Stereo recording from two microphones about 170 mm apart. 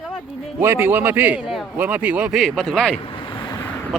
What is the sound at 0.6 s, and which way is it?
A man's voice, 15° right (ahead or behind).